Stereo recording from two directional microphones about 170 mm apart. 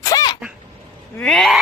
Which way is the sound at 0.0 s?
20° left (ahead or behind).